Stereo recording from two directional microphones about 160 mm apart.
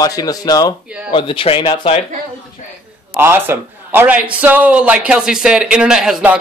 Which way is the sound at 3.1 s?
15° right (ahead or behind).